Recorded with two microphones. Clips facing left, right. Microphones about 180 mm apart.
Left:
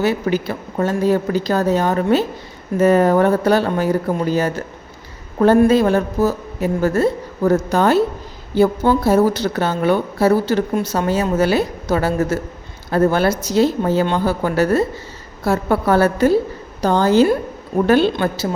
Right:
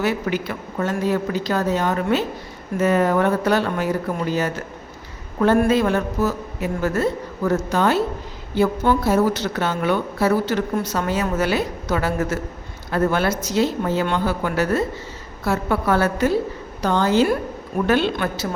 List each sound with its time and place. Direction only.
0.0 s a woman's voice: 35° left (ahead or behind)
5.6 s a woman's voice: 35° left (ahead or behind)